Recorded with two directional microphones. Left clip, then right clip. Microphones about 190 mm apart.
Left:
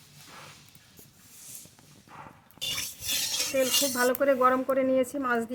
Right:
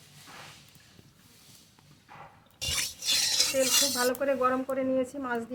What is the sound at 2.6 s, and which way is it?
Filing, centre (ahead or behind).